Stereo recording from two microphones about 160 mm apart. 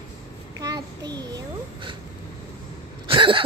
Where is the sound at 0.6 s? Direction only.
25° right (ahead or behind).